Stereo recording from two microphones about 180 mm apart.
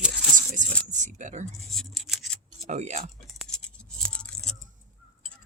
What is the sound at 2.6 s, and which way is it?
Speech, 40° right (ahead or behind).